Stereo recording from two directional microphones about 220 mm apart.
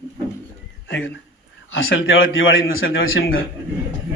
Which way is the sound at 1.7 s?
60° left (ahead or behind).